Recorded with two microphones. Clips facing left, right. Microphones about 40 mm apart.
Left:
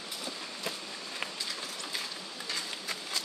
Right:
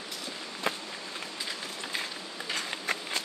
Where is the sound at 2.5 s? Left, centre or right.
Right.